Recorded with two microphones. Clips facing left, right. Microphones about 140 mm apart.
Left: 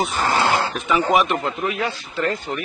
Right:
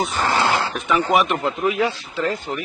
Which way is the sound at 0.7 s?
Centre (ahead or behind).